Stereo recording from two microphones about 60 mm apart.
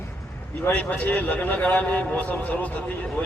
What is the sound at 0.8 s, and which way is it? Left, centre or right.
Speech, left.